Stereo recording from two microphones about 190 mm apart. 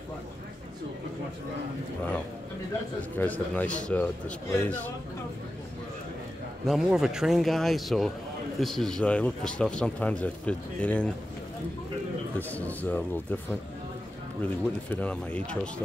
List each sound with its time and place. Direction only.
3.0 s a man's voice: 10° left (ahead or behind)
6.6 s speech: centre (ahead or behind)
12.4 s a man's voice: 10° left (ahead or behind)